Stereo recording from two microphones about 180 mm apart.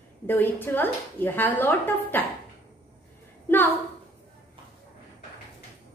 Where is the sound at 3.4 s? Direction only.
10° left (ahead or behind).